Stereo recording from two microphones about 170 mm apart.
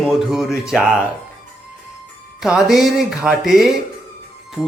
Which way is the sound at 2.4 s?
5° right (ahead or behind).